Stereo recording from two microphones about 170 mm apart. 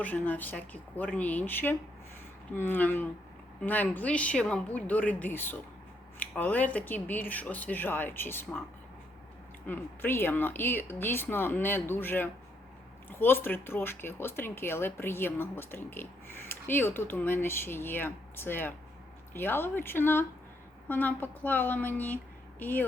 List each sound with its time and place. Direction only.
0.0 s speech: 10° left (ahead or behind)
9.6 s a woman's voice: 10° left (ahead or behind)